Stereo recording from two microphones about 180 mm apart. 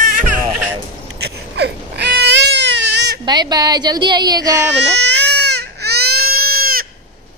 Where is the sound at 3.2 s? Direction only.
25° right (ahead or behind).